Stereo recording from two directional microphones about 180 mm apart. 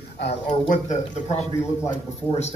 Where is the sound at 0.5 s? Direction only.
45° left (ahead or behind).